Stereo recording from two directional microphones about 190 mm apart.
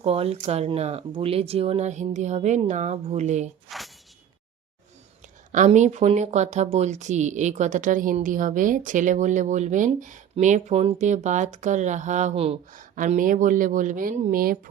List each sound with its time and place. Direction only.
0.0 s speech: 30° right (ahead or behind)
3.7 s a sound: centre (ahead or behind)
5.5 s speech: 40° right (ahead or behind)
12.8 s speech: 45° right (ahead or behind)